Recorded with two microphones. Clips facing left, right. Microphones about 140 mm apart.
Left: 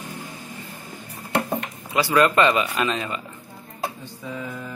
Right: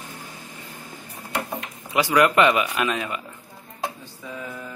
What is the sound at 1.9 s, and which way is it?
Speech, 15° right (ahead or behind).